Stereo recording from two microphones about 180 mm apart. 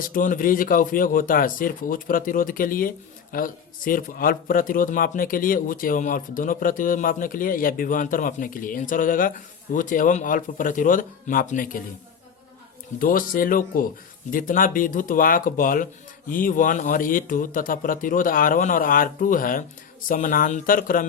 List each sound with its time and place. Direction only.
0.0 s a man's voice: 50° left (ahead or behind)
13.0 s a man's voice: 50° left (ahead or behind)